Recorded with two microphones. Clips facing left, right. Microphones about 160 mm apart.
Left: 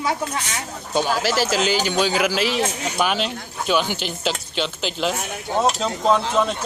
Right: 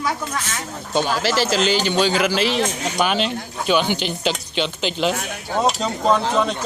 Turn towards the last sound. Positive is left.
turn(degrees=0)  # may be behind; listen again after turning